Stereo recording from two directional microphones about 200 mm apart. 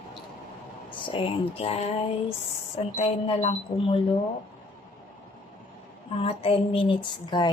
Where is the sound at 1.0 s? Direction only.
25° left (ahead or behind).